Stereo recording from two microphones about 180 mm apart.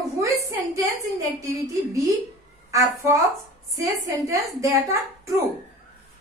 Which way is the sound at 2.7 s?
15° right (ahead or behind).